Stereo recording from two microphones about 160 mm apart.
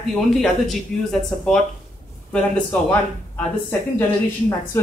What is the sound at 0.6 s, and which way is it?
Speech, centre (ahead or behind).